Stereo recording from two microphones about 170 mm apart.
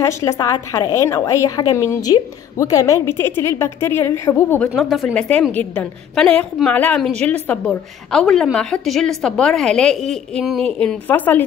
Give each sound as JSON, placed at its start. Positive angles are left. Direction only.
{"t": 0.0, "sound": "a woman's voice", "side_deg": 20}
{"t": 4.7, "sound": "a woman's voice", "side_deg": 0}